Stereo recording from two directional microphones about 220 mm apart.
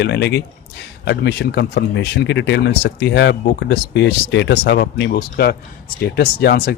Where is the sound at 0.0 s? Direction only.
50° left (ahead or behind).